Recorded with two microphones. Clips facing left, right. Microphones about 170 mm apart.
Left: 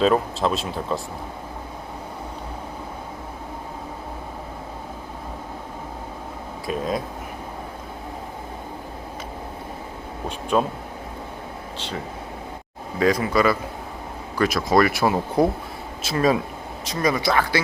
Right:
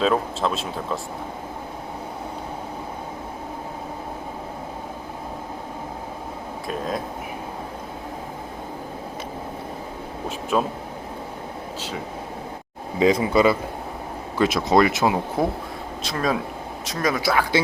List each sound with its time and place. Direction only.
0.0 s speech: centre (ahead or behind)
6.7 s speech: centre (ahead or behind)
10.2 s speech: 5° right (ahead or behind)
13.0 s speech: 25° right (ahead or behind)
16.0 s speech: 5° left (ahead or behind)